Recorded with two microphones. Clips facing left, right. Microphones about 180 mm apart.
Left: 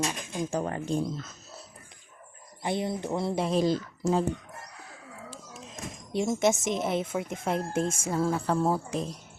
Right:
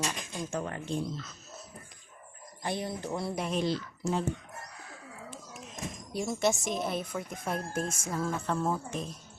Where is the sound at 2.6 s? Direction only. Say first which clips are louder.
Left 4 dB; 20° left (ahead or behind); by 4.3 s 40° left (ahead or behind).